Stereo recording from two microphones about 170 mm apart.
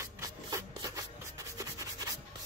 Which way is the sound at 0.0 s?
15° right (ahead or behind).